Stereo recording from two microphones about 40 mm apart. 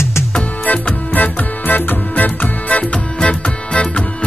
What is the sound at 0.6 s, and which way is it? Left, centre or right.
Music, left.